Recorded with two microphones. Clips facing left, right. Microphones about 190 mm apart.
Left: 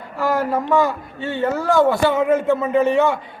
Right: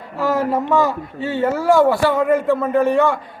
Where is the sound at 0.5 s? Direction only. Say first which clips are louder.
Right 1 dB; centre (ahead or behind).